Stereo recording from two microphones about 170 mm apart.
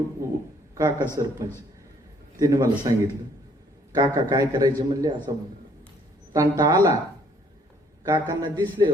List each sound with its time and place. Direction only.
0.2 s a sound: 20° right (ahead or behind)
0.8 s a man's voice: 20° right (ahead or behind)
3.9 s a man's voice: 20° right (ahead or behind)
6.3 s a man's voice: 20° right (ahead or behind)
8.0 s a man's voice: 20° right (ahead or behind)